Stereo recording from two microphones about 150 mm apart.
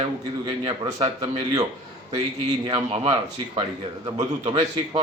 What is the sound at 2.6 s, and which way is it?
A man's voice, 35° right (ahead or behind).